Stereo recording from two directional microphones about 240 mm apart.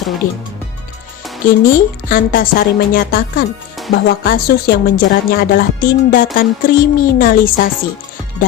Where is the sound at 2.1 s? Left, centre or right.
Left.